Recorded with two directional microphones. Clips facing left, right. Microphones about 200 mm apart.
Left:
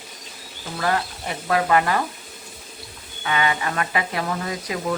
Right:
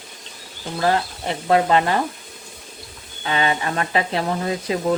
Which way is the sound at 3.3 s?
30° right (ahead or behind).